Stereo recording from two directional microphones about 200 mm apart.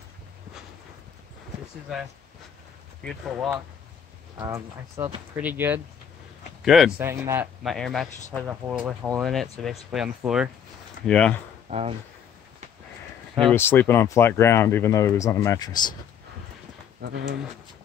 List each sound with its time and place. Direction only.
3.0 s speech: centre (ahead or behind)
3.3 s speech: 10° right (ahead or behind)
7.0 s speech: 15° right (ahead or behind)
7.6 s speech: centre (ahead or behind)
9.2 s speech: centre (ahead or behind)
11.7 s speech: 35° right (ahead or behind)
13.4 s speech: 10° left (ahead or behind)
17.0 s speech: 50° right (ahead or behind)